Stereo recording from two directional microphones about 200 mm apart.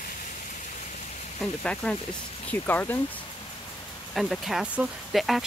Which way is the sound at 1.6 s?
5° left (ahead or behind).